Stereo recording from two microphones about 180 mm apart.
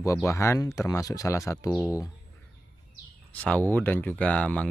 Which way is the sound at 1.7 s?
5° left (ahead or behind).